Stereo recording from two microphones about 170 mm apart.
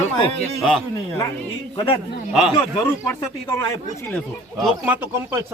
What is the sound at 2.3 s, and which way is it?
Speech, 5° right (ahead or behind).